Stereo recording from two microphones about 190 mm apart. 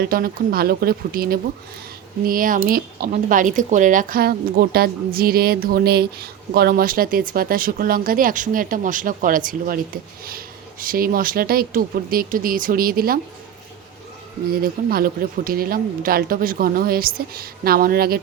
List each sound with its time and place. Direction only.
0.0 s a woman's voice: 50° right (ahead or behind)
14.6 s a woman's voice: 50° right (ahead or behind)